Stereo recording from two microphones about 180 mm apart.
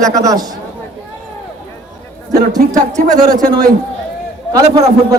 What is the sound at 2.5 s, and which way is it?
A man's voice, 20° right (ahead or behind).